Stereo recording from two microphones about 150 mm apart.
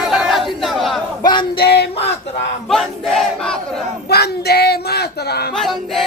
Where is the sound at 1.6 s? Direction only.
90° left.